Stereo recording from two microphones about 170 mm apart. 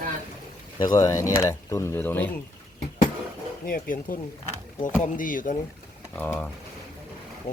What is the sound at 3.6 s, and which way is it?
Speech, 55° left (ahead or behind).